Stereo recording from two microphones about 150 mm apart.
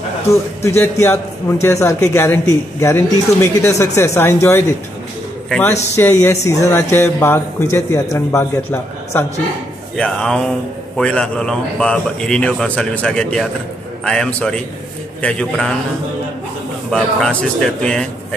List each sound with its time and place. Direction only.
0.3 s a man's voice: 20° left (ahead or behind)
9.9 s a man's voice: 5° left (ahead or behind)
16.9 s a man's voice: 5° left (ahead or behind)